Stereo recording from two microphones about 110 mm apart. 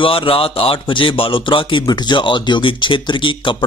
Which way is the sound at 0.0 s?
55° left (ahead or behind).